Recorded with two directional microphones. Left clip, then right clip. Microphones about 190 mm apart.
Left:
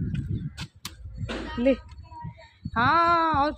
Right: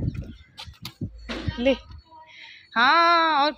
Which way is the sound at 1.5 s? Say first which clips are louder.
Right 1 dB; 20° left (ahead or behind).